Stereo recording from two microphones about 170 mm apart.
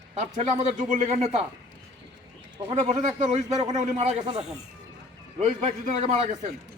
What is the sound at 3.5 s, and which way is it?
Speech, 25° right (ahead or behind).